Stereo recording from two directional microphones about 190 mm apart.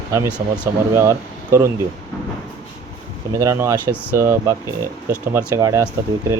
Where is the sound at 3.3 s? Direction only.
15° right (ahead or behind).